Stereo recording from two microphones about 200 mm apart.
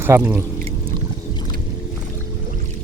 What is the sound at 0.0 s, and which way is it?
Speech, 10° right (ahead or behind).